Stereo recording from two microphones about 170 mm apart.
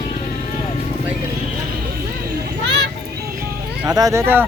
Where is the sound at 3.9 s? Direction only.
20° right (ahead or behind).